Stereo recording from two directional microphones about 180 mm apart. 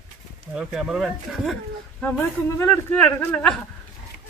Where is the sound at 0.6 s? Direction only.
5° right (ahead or behind).